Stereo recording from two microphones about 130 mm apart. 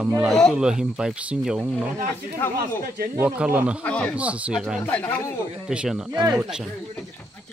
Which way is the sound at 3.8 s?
10° left (ahead or behind).